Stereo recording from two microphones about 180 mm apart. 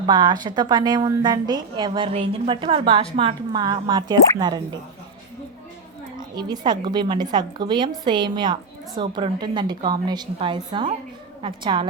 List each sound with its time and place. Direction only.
0.0 s a woman's voice: 25° right (ahead or behind)
6.1 s a woman's voice: 25° right (ahead or behind)